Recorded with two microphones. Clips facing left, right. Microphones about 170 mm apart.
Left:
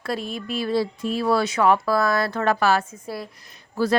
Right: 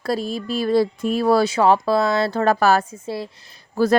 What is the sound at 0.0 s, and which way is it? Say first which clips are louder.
A woman's voice: right 5 dB; 35° right (ahead or behind).